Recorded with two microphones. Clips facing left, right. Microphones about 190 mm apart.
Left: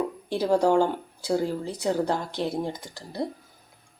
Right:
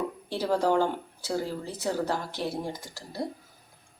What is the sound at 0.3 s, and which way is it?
Speech, 15° left (ahead or behind).